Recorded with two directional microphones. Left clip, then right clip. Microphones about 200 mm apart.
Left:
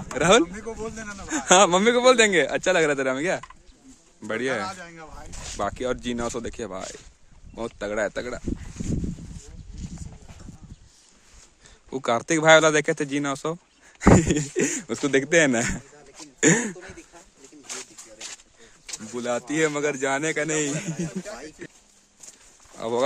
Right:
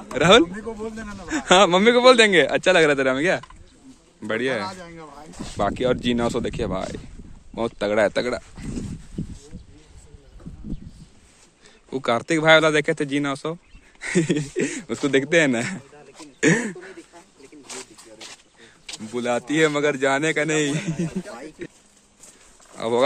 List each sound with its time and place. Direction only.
0.1 s speech: 10° left (ahead or behind); by 8.5 s 10° right (ahead or behind)
11.9 s speech: 10° left (ahead or behind)
17.7 s a sound: 10° right (ahead or behind)
18.2 s speech: centre (ahead or behind)
21.6 s a sound: 10° left (ahead or behind)
22.8 s speech: 10° left (ahead or behind)